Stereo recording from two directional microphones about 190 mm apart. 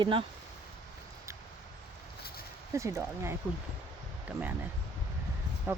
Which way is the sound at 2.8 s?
15° right (ahead or behind).